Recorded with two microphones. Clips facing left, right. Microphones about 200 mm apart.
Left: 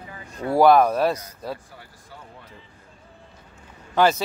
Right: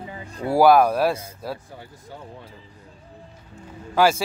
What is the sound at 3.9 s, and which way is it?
Speech, 5° right (ahead or behind).